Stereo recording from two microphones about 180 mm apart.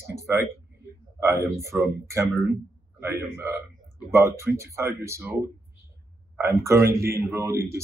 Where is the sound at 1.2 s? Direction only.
15° right (ahead or behind).